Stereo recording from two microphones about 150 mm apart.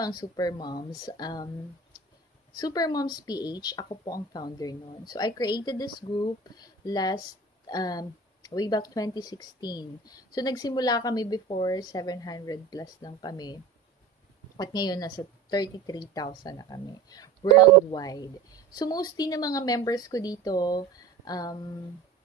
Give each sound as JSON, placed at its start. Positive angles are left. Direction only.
{"t": 0.0, "sound": "speech", "side_deg": 25}
{"t": 2.5, "sound": "speech", "side_deg": 25}
{"t": 14.6, "sound": "speech", "side_deg": 25}